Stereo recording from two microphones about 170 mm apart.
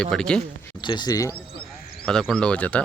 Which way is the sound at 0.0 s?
5° left (ahead or behind).